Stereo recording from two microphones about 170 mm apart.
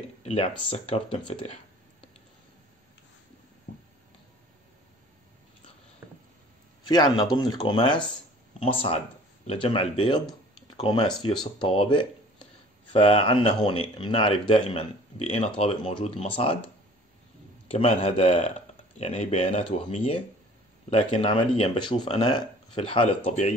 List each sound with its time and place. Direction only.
0.2 s speech: 35° left (ahead or behind)
6.9 s speech: 25° left (ahead or behind)
9.5 s speech: 30° left (ahead or behind)